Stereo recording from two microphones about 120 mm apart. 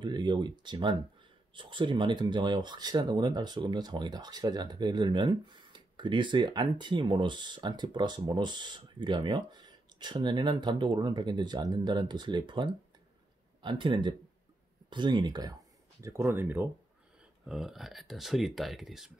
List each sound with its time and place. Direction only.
0.0 s speech: 40° right (ahead or behind)
16.0 s speech: 25° right (ahead or behind)
17.5 s speech: 5° right (ahead or behind)